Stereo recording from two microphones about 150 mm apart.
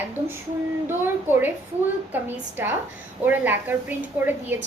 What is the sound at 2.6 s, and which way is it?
A woman's voice, 15° right (ahead or behind).